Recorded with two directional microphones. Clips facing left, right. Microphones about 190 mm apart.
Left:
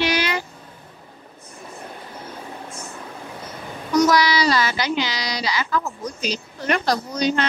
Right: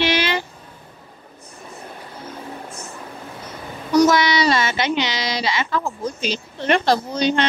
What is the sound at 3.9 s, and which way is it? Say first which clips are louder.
A woman's voice: right 2 dB; 30° right (ahead or behind).